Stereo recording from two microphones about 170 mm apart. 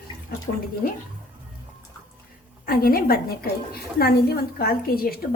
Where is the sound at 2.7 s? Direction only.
60° left (ahead or behind).